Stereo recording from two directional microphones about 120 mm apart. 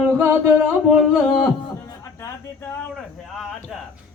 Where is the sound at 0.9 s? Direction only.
Centre (ahead or behind).